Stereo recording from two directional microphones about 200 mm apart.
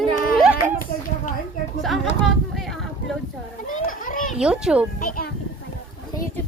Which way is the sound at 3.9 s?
45° left (ahead or behind).